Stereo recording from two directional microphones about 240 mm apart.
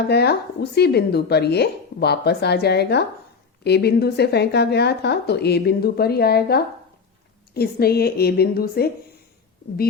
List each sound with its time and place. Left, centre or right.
0.1 s a woman's voice: left